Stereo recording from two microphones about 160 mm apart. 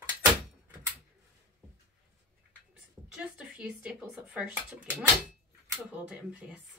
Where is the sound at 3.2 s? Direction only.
5° right (ahead or behind).